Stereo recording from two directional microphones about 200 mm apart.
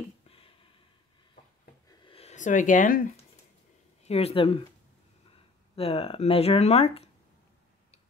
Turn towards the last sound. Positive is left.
turn(degrees=30)  # may be behind; listen again after turning